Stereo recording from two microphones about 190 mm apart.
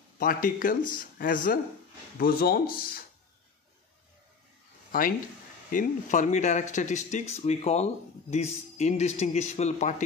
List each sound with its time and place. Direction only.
0.2 s speech: 45° left (ahead or behind)
5.7 s speech: 40° left (ahead or behind)